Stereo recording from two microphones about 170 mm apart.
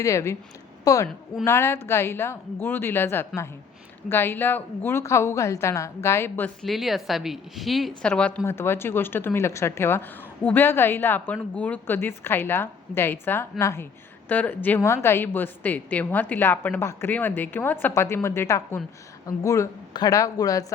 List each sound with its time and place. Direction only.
0.0 s speech: 15° left (ahead or behind)